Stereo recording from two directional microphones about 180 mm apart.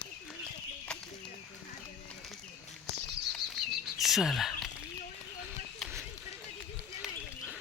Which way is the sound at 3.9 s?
Centre (ahead or behind).